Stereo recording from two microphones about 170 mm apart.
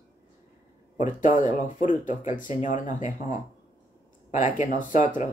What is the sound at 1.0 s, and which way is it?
Speech, 50° left (ahead or behind).